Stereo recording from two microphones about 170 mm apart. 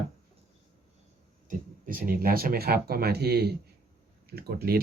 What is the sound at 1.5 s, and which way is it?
Speech, 55° right (ahead or behind).